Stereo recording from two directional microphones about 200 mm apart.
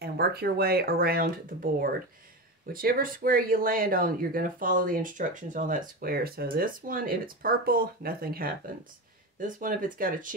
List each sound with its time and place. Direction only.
0.0 s speech: 50° right (ahead or behind)
2.7 s speech: 45° right (ahead or behind)